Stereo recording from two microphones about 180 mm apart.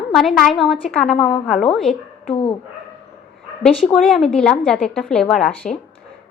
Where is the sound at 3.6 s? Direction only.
Centre (ahead or behind).